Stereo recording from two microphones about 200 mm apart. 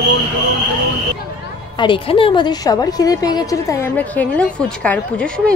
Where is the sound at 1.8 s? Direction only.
25° left (ahead or behind); by 5.4 s 5° left (ahead or behind).